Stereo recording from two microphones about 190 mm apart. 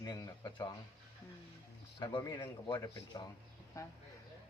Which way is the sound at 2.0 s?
20° left (ahead or behind).